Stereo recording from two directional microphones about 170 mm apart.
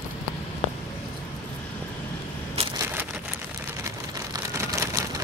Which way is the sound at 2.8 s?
10° right (ahead or behind).